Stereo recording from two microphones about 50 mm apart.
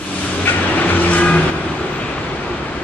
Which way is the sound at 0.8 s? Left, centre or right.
Left.